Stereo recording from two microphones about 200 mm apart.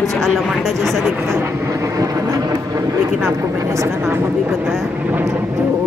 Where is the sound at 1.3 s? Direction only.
15° right (ahead or behind).